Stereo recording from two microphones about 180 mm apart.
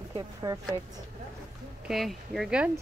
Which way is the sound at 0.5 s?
20° right (ahead or behind).